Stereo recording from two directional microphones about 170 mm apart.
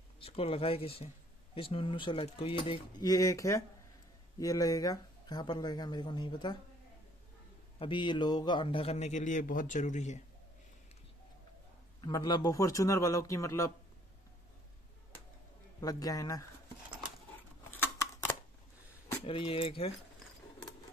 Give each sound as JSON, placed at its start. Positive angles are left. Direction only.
{"t": 0.2, "sound": "speech", "side_deg": 35}
{"t": 3.1, "sound": "speech", "side_deg": 20}
{"t": 7.8, "sound": "speech", "side_deg": 30}
{"t": 12.0, "sound": "speech", "side_deg": 25}
{"t": 15.8, "sound": "speech", "side_deg": 20}
{"t": 17.9, "sound": "a sound", "side_deg": 15}
{"t": 19.2, "sound": "speech", "side_deg": 30}